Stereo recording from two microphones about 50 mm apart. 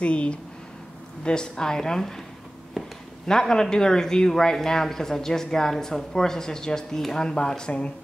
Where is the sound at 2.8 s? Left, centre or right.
Centre.